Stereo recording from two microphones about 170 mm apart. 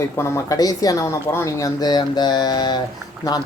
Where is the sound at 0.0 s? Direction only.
15° left (ahead or behind).